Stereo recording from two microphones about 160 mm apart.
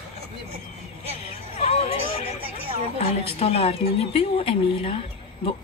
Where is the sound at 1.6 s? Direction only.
40° left (ahead or behind).